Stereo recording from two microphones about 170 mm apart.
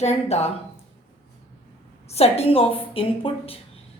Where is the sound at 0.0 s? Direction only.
40° left (ahead or behind).